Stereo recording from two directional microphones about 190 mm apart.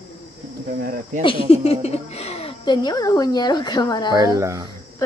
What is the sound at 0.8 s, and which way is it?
Speech, 50° right (ahead or behind).